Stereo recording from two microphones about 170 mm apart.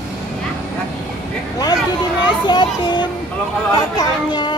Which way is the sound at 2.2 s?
25° left (ahead or behind).